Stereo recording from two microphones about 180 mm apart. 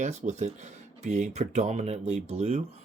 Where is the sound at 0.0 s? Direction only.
40° right (ahead or behind).